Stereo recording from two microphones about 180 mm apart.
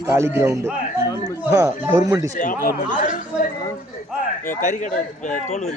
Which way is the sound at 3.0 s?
45° left (ahead or behind).